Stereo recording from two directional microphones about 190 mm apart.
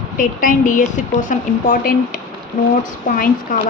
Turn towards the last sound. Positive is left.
turn(degrees=45)  # may be behind; listen again after turning